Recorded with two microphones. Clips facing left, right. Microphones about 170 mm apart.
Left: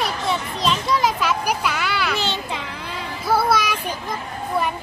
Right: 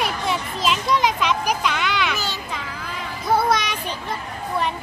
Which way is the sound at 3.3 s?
5° left (ahead or behind).